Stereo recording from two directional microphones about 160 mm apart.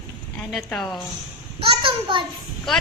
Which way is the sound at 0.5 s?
Centre (ahead or behind).